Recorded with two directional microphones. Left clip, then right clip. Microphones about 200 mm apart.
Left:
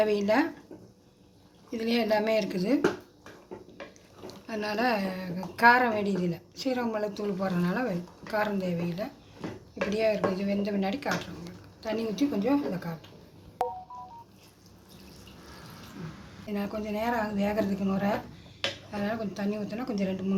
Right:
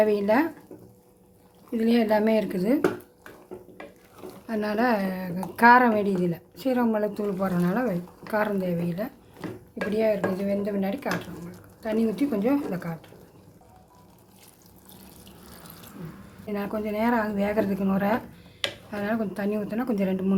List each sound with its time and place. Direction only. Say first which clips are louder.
0.0 s speech: right 3 dB; 15° right (ahead or behind)
1.7 s speech: right 4 dB; 20° right (ahead or behind)
4.3 s speech: right 4 dB; 20° right (ahead or behind)
16.5 s speech: right 4 dB; 25° right (ahead or behind)